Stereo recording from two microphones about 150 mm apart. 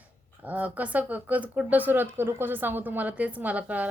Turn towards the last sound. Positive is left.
turn(degrees=-10)  # may be behind; listen again after turning